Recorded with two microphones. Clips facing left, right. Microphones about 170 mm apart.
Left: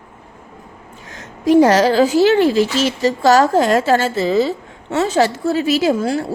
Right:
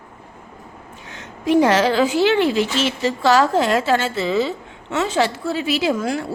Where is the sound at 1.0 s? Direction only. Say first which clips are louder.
Left 5 dB; 40° left (ahead or behind).